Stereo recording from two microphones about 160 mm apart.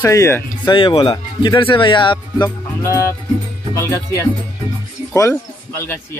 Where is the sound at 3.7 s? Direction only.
15° left (ahead or behind).